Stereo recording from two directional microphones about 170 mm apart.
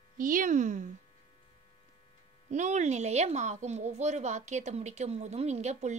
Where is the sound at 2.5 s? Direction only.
45° right (ahead or behind).